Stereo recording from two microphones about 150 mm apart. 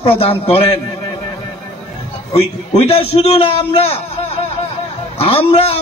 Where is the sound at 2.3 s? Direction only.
40° left (ahead or behind).